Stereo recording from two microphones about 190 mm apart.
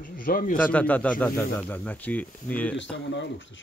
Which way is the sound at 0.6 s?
5° left (ahead or behind).